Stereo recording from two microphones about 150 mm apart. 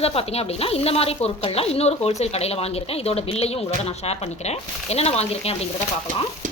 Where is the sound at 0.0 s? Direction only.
40° left (ahead or behind).